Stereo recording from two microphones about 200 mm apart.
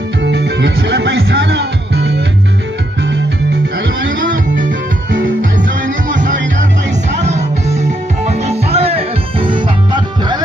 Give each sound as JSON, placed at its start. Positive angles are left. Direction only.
{"t": 0.2, "sound": "music", "side_deg": -60}
{"t": 6.0, "sound": "music", "side_deg": -40}